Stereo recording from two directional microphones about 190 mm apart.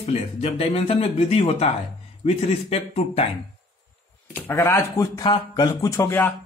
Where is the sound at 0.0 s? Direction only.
30° left (ahead or behind).